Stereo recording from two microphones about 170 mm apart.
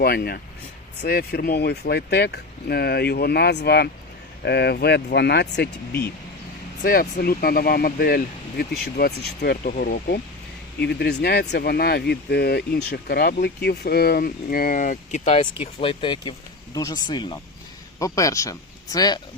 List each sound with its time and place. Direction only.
0.0 s speech: 65° left (ahead or behind)
6.8 s speech: 60° left (ahead or behind)
10.8 s speech: 75° left (ahead or behind); by 19.2 s 25° left (ahead or behind)